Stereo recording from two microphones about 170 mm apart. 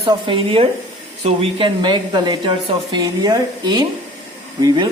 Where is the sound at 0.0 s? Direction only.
30° right (ahead or behind).